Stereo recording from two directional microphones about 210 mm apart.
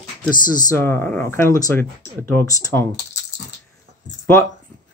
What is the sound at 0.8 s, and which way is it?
Speech, 10° left (ahead or behind).